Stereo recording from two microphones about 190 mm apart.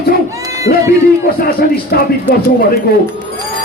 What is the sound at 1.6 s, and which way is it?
Music, 55° left (ahead or behind).